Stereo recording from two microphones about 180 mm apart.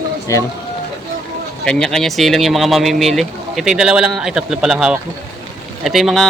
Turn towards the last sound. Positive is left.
turn(degrees=0)  # may be behind; listen again after turning